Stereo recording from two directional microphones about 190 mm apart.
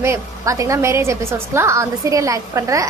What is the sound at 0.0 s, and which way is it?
A woman's voice, 15° right (ahead or behind).